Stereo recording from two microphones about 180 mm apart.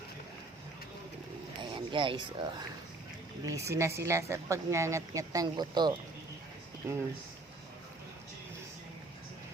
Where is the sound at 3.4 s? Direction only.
15° right (ahead or behind).